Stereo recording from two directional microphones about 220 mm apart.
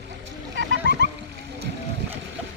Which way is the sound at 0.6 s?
55° right (ahead or behind).